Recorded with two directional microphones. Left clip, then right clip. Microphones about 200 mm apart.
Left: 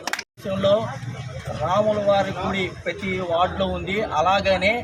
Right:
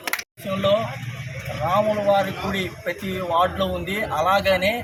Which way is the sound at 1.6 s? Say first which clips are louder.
Even; centre (ahead or behind).